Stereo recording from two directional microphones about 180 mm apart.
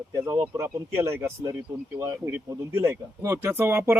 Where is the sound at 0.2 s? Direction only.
20° right (ahead or behind).